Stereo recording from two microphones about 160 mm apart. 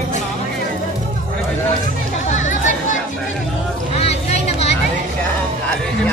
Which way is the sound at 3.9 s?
40° left (ahead or behind).